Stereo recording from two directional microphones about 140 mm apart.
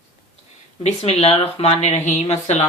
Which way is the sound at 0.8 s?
50° left (ahead or behind).